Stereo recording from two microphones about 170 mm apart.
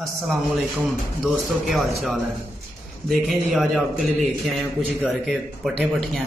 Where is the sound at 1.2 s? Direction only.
Centre (ahead or behind).